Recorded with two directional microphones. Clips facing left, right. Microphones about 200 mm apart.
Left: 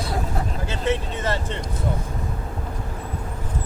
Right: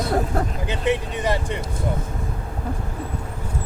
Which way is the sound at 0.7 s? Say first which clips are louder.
Even; 15° right (ahead or behind).